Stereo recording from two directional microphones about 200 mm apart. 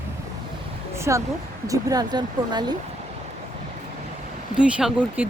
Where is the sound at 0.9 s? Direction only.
15° right (ahead or behind).